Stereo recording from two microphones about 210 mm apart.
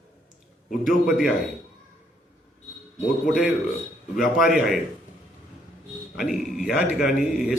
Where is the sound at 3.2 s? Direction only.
5° right (ahead or behind).